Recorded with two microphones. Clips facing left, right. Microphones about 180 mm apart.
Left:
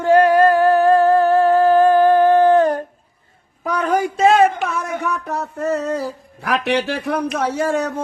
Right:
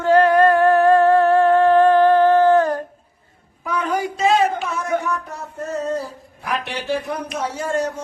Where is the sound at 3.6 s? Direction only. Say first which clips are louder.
Left 4 dB; 40° left (ahead or behind).